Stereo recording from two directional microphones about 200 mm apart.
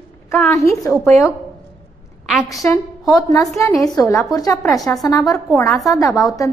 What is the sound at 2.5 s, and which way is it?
A woman's voice, 15° left (ahead or behind).